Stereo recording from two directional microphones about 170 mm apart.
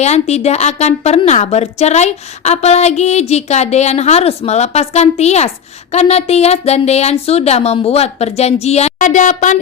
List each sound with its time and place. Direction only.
0.0 s a woman's voice: 40° left (ahead or behind)